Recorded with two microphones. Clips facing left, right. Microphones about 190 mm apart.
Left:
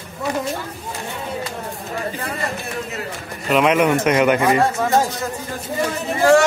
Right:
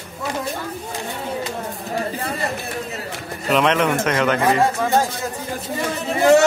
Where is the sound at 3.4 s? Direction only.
5° left (ahead or behind).